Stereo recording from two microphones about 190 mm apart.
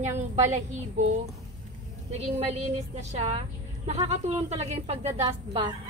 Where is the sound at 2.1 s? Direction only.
35° right (ahead or behind).